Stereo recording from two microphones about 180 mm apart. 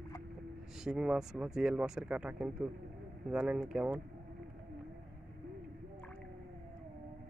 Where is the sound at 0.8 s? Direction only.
5° right (ahead or behind).